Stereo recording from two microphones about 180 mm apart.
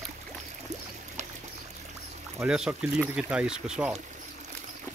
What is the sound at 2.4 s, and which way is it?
Speech, 5° right (ahead or behind).